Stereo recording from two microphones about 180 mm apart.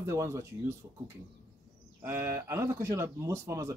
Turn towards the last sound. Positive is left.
turn(degrees=-15)  # may be behind; listen again after turning